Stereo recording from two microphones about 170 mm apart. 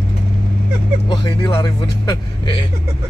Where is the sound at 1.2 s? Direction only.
25° left (ahead or behind).